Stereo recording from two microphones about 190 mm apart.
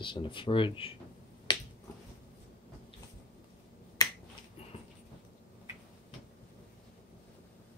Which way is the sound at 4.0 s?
20° left (ahead or behind).